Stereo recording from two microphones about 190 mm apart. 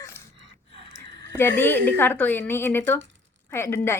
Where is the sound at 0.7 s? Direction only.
70° right (ahead or behind).